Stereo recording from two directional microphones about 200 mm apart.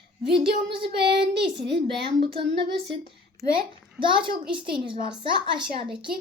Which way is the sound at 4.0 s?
25° right (ahead or behind).